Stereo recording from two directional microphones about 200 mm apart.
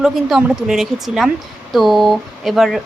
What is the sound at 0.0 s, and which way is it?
Speech, 5° right (ahead or behind).